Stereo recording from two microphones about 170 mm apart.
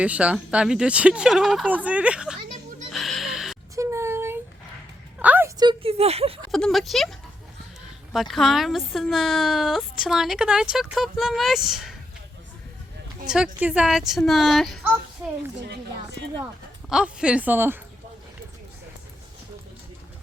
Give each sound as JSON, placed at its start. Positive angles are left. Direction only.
{"t": 0.0, "sound": "speech", "side_deg": -5}
{"t": 2.9, "sound": "neigh", "side_deg": 0}
{"t": 3.8, "sound": "child singing", "side_deg": -15}
{"t": 5.2, "sound": "a sound", "side_deg": -10}
{"t": 5.5, "sound": "a sound", "side_deg": -30}
{"t": 6.5, "sound": "speech", "side_deg": 0}
{"t": 8.1, "sound": "speech", "side_deg": 0}
{"t": 13.6, "sound": "speech", "side_deg": -5}
{"t": 16.9, "sound": "speech", "side_deg": -5}